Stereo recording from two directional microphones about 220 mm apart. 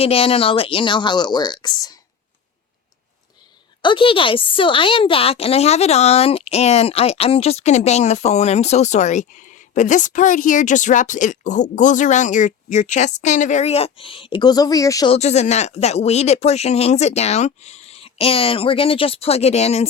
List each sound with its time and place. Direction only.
0.0 s a woman's voice: 25° left (ahead or behind)
3.8 s a woman's voice: 20° left (ahead or behind)
15.1 s a woman's voice: 30° left (ahead or behind)